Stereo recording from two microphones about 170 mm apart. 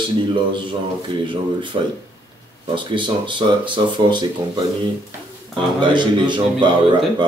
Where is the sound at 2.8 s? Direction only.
30° right (ahead or behind).